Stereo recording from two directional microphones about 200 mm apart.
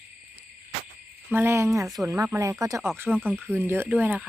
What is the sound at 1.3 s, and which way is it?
Speech, 10° right (ahead or behind).